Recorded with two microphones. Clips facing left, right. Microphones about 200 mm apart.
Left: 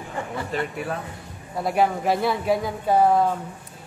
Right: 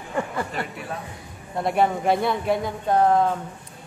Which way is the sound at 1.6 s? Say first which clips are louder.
Even; centre (ahead or behind).